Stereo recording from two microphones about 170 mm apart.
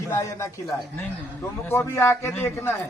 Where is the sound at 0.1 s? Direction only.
20° left (ahead or behind).